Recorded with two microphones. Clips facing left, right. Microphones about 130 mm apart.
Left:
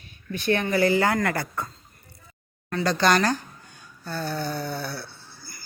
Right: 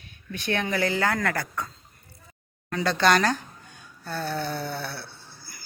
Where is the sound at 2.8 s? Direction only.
Centre (ahead or behind).